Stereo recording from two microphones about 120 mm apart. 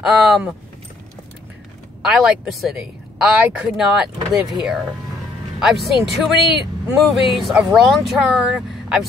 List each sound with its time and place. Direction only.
0.0 s speech: 5° right (ahead or behind)
2.0 s speech: centre (ahead or behind)